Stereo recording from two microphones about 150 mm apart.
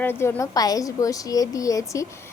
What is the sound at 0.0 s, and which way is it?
A woman's voice, 15° left (ahead or behind).